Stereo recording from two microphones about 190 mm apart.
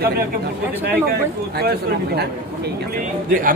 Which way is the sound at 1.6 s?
55° right (ahead or behind).